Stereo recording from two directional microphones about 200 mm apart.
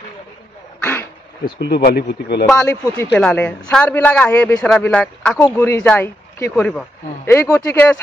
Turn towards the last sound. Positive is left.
turn(degrees=5)  # may be behind; listen again after turning